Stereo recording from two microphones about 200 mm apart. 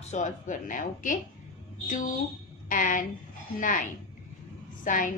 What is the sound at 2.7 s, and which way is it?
Speech, 40° left (ahead or behind).